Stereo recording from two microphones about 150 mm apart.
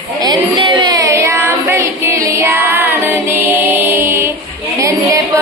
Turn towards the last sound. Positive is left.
turn(degrees=-20)  # may be behind; listen again after turning